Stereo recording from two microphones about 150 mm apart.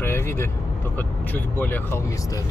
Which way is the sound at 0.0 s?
15° left (ahead or behind).